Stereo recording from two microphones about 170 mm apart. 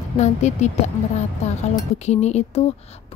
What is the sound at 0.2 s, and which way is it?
A woman's voice, 45° left (ahead or behind).